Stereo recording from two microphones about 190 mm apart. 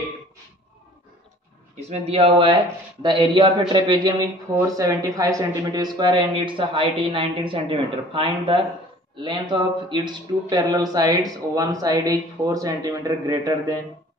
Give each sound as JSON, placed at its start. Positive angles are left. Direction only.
{"t": 1.8, "sound": "speech", "side_deg": -35}